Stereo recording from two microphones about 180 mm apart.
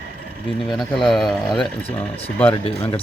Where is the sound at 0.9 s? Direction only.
Centre (ahead or behind).